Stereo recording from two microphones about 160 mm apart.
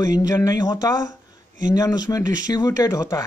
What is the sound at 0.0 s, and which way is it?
Speech, 25° left (ahead or behind).